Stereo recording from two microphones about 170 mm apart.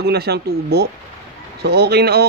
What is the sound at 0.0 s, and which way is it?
Speech, 70° right (ahead or behind).